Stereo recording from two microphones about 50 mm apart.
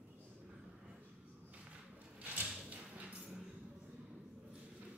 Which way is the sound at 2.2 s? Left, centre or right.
Right.